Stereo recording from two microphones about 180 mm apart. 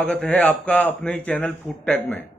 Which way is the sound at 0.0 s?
5° left (ahead or behind).